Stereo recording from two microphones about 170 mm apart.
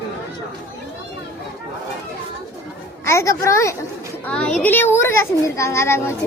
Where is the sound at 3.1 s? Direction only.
15° left (ahead or behind).